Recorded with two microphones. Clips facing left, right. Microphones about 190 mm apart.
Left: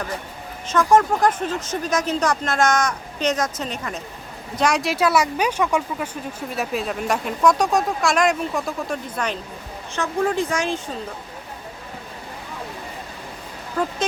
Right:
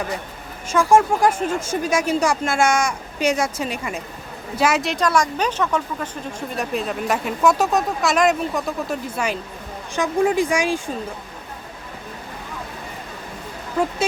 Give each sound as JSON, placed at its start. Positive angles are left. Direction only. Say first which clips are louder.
{"t": 0.7, "sound": "a woman's voice", "louder": "right 1 dB", "side_deg": -10}